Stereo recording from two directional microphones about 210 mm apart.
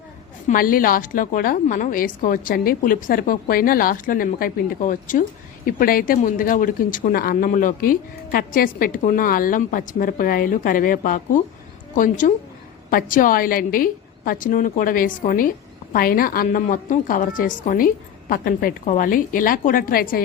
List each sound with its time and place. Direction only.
0.4 s a woman's voice: 40° left (ahead or behind)